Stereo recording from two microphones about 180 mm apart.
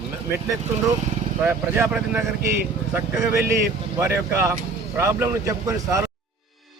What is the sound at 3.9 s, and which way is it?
Speech, 15° right (ahead or behind).